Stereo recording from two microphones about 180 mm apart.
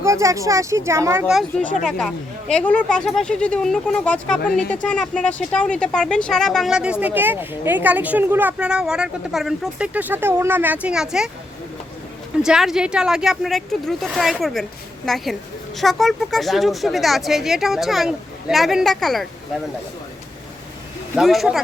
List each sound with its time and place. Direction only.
0.0 s speech: 15° right (ahead or behind)
1.3 s speech: centre (ahead or behind)
12.4 s speech: 5° right (ahead or behind)
21.2 s speech: centre (ahead or behind)